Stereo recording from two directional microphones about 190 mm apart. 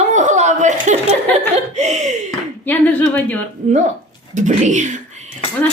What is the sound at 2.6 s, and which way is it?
Speech, 10° left (ahead or behind).